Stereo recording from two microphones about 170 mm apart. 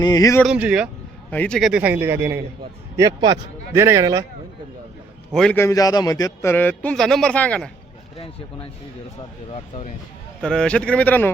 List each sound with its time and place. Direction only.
0.0 s speech: 20° left (ahead or behind)
0.4 s speech: 5° right (ahead or behind)
1.3 s a man's voice: 5° left (ahead or behind); by 4.3 s 20° right (ahead or behind)
5.3 s speech: 5° left (ahead or behind)
5.5 s a man's voice: 20° left (ahead or behind)
9.5 s speech: 40° left (ahead or behind)
10.4 s a man's voice: 5° left (ahead or behind)